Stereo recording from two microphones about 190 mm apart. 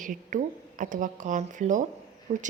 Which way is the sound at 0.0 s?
45° right (ahead or behind).